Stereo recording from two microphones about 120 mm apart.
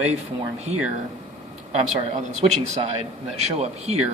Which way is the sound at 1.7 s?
80° right.